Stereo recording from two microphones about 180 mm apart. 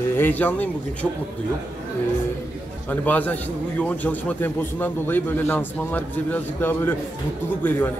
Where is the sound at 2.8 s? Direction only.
10° left (ahead or behind).